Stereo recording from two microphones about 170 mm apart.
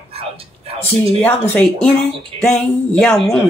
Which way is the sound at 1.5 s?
10° left (ahead or behind).